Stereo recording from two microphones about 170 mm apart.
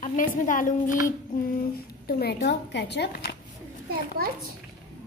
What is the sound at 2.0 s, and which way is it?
A woman's voice, 70° left (ahead or behind).